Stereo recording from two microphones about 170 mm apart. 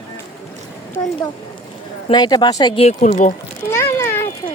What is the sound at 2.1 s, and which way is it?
Speech, 25° left (ahead or behind).